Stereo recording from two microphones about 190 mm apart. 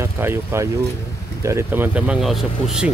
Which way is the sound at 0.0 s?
10° right (ahead or behind).